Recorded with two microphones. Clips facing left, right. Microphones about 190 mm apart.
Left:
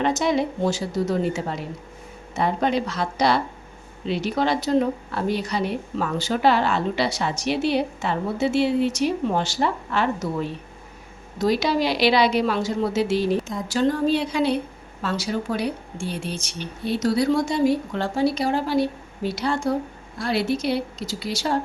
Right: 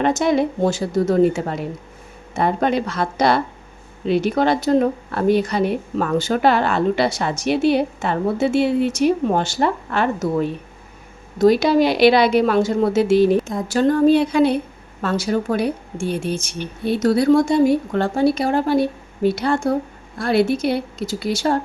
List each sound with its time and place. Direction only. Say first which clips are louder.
0.0 s speech: right 4 dB; 55° right (ahead or behind)